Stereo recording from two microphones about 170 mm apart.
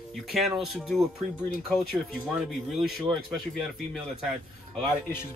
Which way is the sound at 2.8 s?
Centre (ahead or behind).